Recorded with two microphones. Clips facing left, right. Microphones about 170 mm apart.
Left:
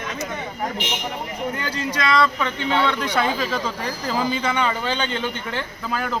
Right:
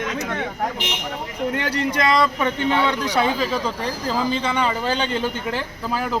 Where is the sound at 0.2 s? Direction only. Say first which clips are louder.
Right 3 dB; 65° right (ahead or behind).